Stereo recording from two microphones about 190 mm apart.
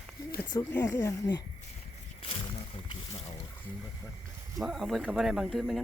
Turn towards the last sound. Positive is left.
turn(degrees=0)  # may be behind; listen again after turning